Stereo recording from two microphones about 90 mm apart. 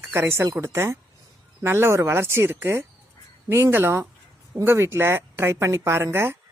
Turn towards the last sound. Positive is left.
turn(degrees=-30)  # may be behind; listen again after turning